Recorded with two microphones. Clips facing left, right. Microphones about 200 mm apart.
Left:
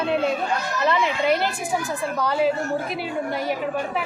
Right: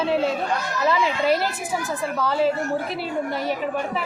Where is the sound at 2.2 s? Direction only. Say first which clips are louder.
Even; centre (ahead or behind).